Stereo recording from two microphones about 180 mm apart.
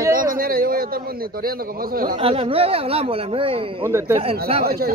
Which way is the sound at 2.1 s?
30° right (ahead or behind).